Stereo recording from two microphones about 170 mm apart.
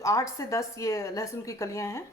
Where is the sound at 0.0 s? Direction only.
20° left (ahead or behind).